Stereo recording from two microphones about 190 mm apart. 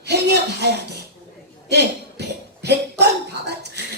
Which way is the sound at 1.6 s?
60° right (ahead or behind).